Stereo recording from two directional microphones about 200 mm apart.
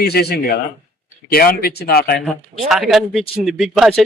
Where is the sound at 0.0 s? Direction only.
55° left (ahead or behind).